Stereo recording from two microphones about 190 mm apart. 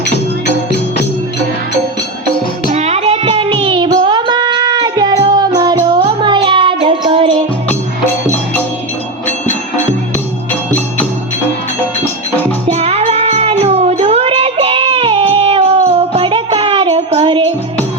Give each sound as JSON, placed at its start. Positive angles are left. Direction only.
{"t": 2.6, "sound": "music", "side_deg": -35}
{"t": 12.6, "sound": "music", "side_deg": -35}